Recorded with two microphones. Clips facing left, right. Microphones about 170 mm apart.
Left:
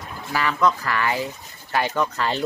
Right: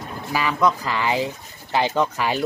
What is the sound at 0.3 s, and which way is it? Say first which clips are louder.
Speech: right 1 dB; 15° right (ahead or behind).